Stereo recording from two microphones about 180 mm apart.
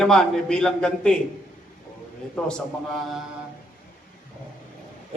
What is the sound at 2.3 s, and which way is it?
Speech, 5° left (ahead or behind).